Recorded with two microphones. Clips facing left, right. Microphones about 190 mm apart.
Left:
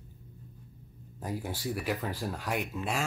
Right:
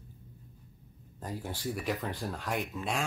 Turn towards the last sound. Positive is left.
turn(degrees=5)  # may be behind; listen again after turning